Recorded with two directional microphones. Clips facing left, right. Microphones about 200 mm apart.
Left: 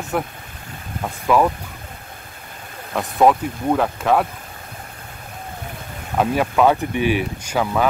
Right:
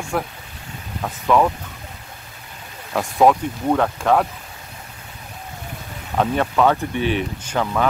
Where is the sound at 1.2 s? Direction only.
5° left (ahead or behind).